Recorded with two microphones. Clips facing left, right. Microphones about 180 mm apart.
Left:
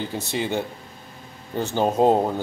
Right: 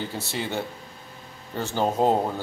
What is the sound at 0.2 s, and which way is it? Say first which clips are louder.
Speech: left 6 dB; 20° left (ahead or behind).